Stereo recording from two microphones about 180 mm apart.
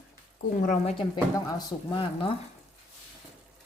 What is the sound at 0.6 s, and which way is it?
Speech, 45° left (ahead or behind).